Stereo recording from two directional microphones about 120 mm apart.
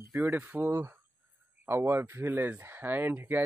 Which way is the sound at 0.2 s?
15° right (ahead or behind).